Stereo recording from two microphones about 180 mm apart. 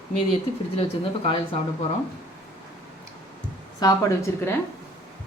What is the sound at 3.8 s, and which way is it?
Speech, 20° left (ahead or behind).